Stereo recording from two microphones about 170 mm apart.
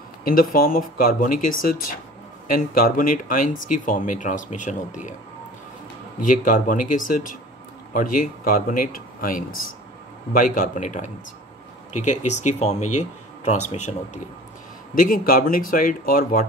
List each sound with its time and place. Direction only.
0.2 s speech: 55° left (ahead or behind)
6.4 s speech: 55° left (ahead or behind)
15.0 s speech: 55° left (ahead or behind)